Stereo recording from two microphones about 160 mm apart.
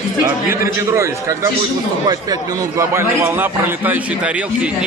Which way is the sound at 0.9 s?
15° right (ahead or behind).